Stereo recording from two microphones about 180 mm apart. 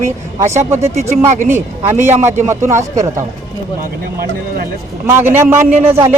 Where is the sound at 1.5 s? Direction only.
15° right (ahead or behind).